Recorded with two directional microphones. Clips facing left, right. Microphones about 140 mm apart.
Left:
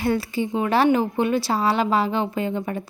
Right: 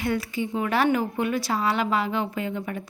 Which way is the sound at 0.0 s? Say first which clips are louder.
Left 4 dB; 30° left (ahead or behind).